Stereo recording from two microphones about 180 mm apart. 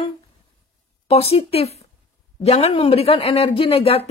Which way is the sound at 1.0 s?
35° left (ahead or behind).